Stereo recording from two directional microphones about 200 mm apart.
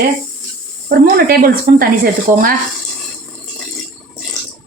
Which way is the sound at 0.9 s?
50° right (ahead or behind).